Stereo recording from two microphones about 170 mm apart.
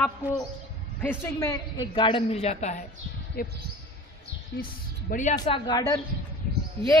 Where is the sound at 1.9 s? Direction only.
30° left (ahead or behind).